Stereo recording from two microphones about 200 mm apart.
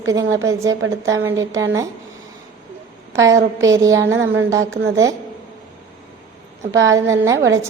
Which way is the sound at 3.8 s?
15° right (ahead or behind).